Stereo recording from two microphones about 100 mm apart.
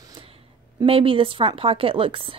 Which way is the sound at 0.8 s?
65° right (ahead or behind).